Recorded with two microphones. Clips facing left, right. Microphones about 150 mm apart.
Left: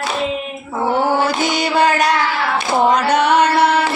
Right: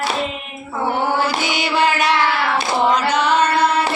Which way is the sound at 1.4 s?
40° left (ahead or behind).